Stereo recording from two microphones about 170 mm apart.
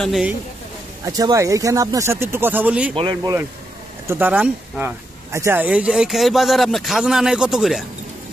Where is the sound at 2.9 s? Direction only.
25° right (ahead or behind).